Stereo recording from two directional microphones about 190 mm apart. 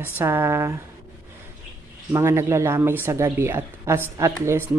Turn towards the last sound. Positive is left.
turn(degrees=-15)  # may be behind; listen again after turning